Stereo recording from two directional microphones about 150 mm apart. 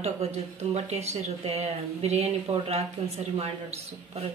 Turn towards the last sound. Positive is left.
turn(degrees=-40)  # may be behind; listen again after turning